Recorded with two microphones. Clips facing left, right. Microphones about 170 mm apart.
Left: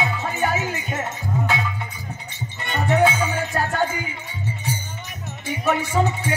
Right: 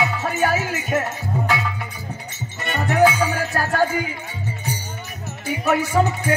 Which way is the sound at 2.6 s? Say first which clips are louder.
Right 2 dB; 25° left (ahead or behind).